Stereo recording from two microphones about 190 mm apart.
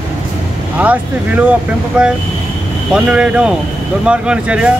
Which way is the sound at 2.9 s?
5° right (ahead or behind).